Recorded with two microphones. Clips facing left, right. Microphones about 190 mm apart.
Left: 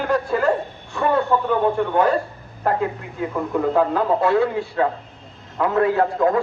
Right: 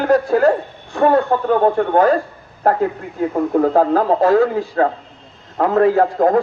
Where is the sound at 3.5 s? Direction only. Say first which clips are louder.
Right 4 dB; 45° right (ahead or behind).